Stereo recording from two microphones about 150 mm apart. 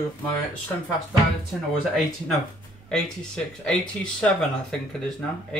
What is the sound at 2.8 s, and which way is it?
Speech, 5° left (ahead or behind).